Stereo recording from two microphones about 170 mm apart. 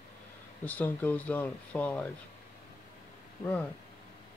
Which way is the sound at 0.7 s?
10° left (ahead or behind).